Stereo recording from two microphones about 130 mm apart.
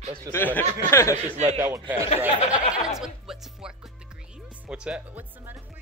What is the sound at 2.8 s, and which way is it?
A man's voice, 5° right (ahead or behind).